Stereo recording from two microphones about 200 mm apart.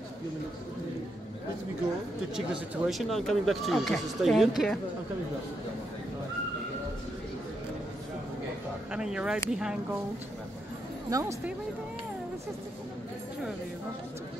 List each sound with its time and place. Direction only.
2.3 s speech: centre (ahead or behind)
8.9 s speech: 5° right (ahead or behind)
11.1 s speech: 15° right (ahead or behind)